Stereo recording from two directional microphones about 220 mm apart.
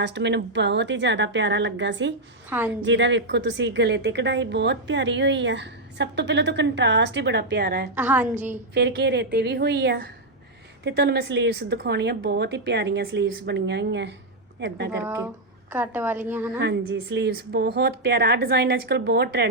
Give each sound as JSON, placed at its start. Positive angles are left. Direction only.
{"t": 0.0, "sound": "a woman's voice", "side_deg": -55}
{"t": 2.5, "sound": "a woman's voice", "side_deg": -10}
{"t": 2.8, "sound": "a woman's voice", "side_deg": -55}
{"t": 7.9, "sound": "a woman's voice", "side_deg": -5}
{"t": 8.7, "sound": "a woman's voice", "side_deg": -50}
{"t": 15.0, "sound": "a woman's voice", "side_deg": -10}
{"t": 16.6, "sound": "a woman's voice", "side_deg": -50}